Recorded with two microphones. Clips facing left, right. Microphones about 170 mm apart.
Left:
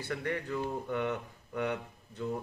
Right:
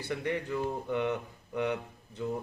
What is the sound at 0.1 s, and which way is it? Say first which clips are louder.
Speech: right 2 dB; 20° right (ahead or behind).